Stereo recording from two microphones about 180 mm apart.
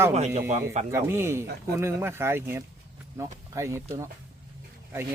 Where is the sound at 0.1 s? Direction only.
35° right (ahead or behind).